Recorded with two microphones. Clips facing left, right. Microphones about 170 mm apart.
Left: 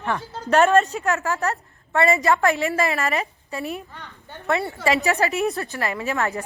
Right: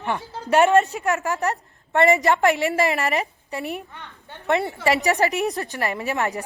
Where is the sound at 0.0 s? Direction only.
15° right (ahead or behind).